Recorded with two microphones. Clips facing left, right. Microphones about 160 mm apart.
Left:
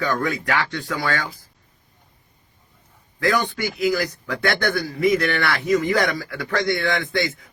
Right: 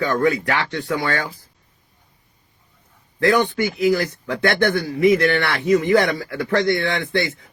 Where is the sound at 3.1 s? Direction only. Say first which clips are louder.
Right 4 dB; 25° right (ahead or behind).